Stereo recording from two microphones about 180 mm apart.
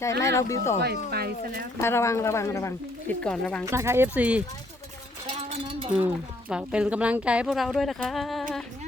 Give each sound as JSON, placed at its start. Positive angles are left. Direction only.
{"t": 0.0, "sound": "speech", "side_deg": 15}
{"t": 1.1, "sound": "speech", "side_deg": -60}
{"t": 1.8, "sound": "speech", "side_deg": 15}
{"t": 3.7, "sound": "speech", "side_deg": -15}
{"t": 5.4, "sound": "a sound", "side_deg": -30}
{"t": 5.9, "sound": "speech", "side_deg": -5}